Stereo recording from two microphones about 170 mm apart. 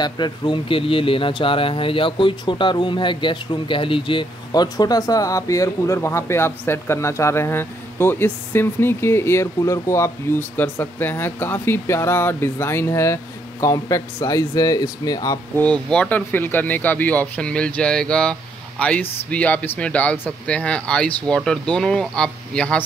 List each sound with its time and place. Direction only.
0.0 s speech: 25° left (ahead or behind)
15.9 s speech: 5° left (ahead or behind)